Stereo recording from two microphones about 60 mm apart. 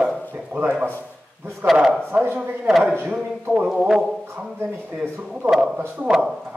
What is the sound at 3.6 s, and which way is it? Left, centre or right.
Speech, centre.